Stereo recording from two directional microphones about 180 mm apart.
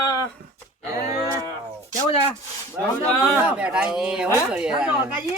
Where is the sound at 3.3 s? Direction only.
5° right (ahead or behind).